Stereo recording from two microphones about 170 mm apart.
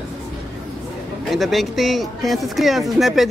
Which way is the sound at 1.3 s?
Centre (ahead or behind).